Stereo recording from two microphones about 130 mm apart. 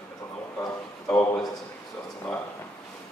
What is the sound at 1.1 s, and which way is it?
Speech, 15° left (ahead or behind).